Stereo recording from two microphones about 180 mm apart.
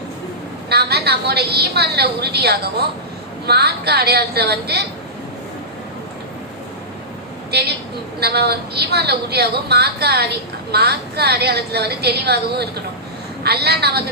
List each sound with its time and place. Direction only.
0.7 s a woman's voice: 65° right (ahead or behind)
7.5 s a woman's voice: 65° right (ahead or behind)